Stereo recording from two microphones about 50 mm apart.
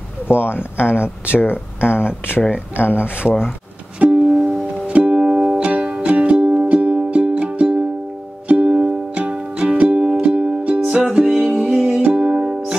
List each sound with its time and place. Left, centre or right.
0.3 s speech: left
4.0 s music: right
5.2 s music: centre